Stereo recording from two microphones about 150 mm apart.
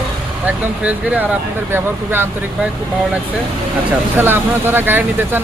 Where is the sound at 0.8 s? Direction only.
10° right (ahead or behind).